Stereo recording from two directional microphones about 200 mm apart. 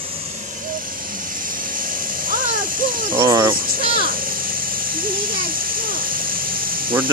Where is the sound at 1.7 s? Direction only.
45° right (ahead or behind).